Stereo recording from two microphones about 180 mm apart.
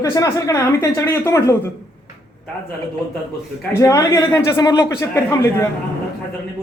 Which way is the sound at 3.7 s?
15° left (ahead or behind).